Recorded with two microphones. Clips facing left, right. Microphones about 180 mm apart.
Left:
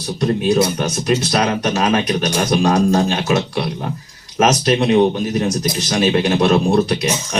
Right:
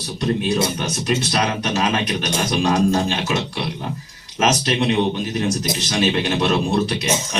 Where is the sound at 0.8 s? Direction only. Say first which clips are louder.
Left 4 dB; 45° left (ahead or behind).